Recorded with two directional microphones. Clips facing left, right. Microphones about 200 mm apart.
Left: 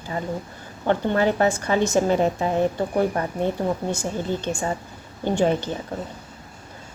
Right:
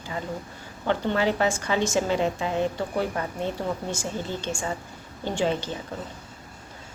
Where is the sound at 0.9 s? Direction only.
50° left (ahead or behind).